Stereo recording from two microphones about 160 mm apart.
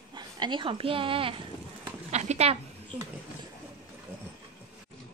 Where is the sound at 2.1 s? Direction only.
45° right (ahead or behind).